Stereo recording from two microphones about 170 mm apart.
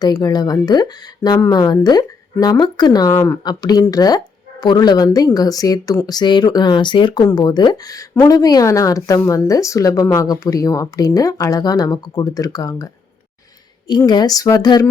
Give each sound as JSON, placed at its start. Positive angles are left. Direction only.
{"t": 0.0, "sound": "speech", "side_deg": 25}
{"t": 14.1, "sound": "speech", "side_deg": 20}